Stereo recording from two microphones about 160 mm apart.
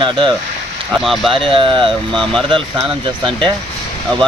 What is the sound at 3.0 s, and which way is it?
Speech, 30° right (ahead or behind).